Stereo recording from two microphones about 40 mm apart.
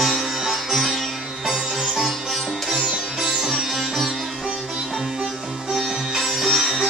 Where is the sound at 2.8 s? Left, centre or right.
Right.